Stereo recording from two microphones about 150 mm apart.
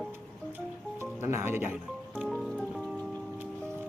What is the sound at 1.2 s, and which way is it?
Speech, 15° right (ahead or behind).